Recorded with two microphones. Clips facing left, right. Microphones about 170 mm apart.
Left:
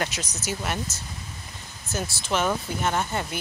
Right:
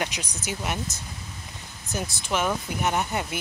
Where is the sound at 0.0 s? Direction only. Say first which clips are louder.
Left 1 dB; 10° right (ahead or behind).